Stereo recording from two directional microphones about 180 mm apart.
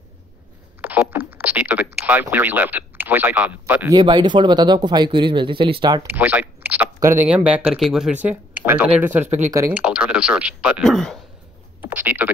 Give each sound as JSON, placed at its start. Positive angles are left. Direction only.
{"t": 0.7, "sound": "speech", "side_deg": -10}
{"t": 4.0, "sound": "speech", "side_deg": -25}
{"t": 6.0, "sound": "speech", "side_deg": -10}
{"t": 11.8, "sound": "speech", "side_deg": -10}